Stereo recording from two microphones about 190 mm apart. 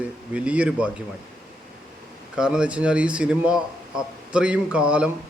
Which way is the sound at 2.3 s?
5° right (ahead or behind).